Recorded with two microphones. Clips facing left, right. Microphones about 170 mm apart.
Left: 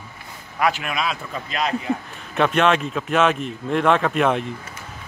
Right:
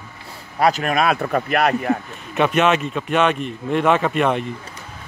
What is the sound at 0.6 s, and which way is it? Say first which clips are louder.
Speech: right 5 dB; 40° right (ahead or behind).